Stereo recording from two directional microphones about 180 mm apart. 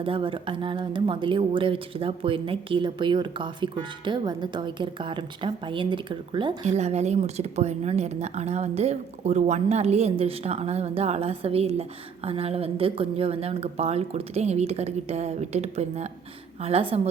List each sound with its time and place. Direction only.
0.0 s speech: 30° right (ahead or behind)
6.7 s a woman's voice: 40° right (ahead or behind)